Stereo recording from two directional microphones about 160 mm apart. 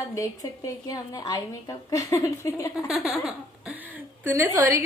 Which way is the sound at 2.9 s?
Centre (ahead or behind).